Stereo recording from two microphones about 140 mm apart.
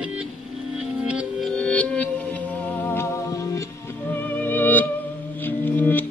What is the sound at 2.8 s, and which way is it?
Music, 20° left (ahead or behind).